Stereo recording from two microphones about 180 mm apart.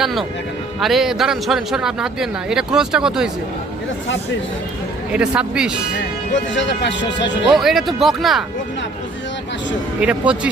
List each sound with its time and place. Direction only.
0.0 s speech: centre (ahead or behind)
5.1 s speech: 5° right (ahead or behind)
6.3 s speech: 80° left
7.5 s speech: centre (ahead or behind)
10.0 s speech: 5° right (ahead or behind)